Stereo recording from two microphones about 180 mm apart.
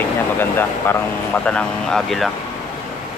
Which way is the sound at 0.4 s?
10° left (ahead or behind).